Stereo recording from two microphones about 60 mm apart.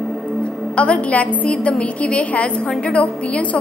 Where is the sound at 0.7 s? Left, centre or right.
Left.